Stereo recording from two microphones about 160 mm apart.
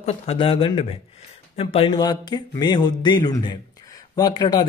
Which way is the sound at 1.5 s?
40° left (ahead or behind).